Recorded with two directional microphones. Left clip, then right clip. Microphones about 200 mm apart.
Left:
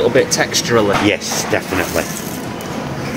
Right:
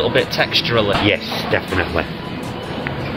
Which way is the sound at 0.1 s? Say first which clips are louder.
Left 2 dB; 35° left (ahead or behind).